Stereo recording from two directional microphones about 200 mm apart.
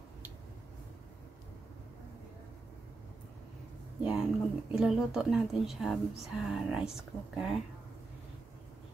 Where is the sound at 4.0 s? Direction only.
5° right (ahead or behind).